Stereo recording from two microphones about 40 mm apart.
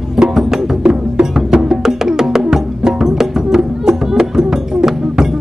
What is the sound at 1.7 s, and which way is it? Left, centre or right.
Music, centre.